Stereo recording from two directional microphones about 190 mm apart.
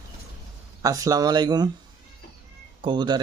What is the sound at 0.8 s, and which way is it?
Speech, 20° right (ahead or behind).